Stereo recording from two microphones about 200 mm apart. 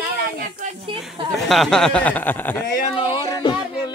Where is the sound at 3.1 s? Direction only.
25° left (ahead or behind).